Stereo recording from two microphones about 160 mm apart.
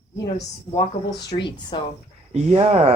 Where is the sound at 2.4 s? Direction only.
40° right (ahead or behind).